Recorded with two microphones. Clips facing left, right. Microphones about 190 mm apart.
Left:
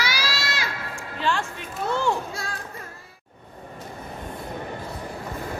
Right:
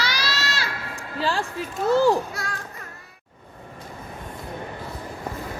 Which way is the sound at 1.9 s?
35° right (ahead or behind).